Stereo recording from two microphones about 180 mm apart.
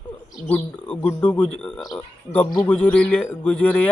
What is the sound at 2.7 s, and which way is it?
Speech, 10° left (ahead or behind).